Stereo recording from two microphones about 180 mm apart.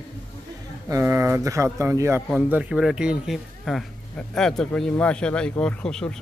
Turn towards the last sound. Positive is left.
turn(degrees=5)  # may be behind; listen again after turning